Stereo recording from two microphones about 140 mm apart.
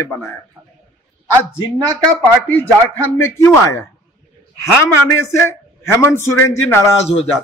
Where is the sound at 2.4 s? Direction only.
15° left (ahead or behind).